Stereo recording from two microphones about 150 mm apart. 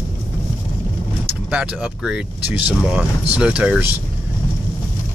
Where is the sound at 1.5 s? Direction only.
5° right (ahead or behind).